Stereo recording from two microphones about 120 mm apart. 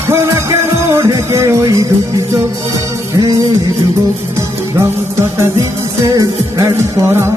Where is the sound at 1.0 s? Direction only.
25° right (ahead or behind).